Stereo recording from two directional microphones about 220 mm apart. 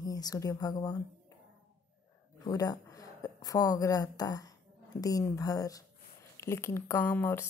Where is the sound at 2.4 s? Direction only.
15° left (ahead or behind).